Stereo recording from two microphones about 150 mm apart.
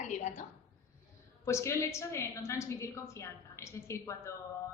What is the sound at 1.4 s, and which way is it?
Speech, 20° left (ahead or behind).